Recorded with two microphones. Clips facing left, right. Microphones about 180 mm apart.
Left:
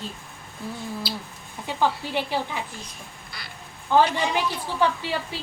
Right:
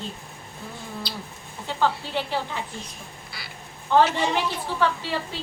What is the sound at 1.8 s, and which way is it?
Speech, 15° left (ahead or behind).